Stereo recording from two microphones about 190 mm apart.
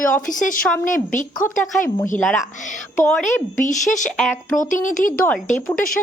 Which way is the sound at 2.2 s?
5° left (ahead or behind).